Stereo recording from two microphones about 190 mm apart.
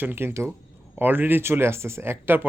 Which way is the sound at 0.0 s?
10° right (ahead or behind).